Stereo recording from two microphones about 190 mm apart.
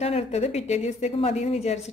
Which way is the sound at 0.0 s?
30° left (ahead or behind).